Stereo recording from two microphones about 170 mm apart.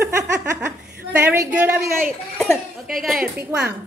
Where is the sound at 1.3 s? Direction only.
10° right (ahead or behind).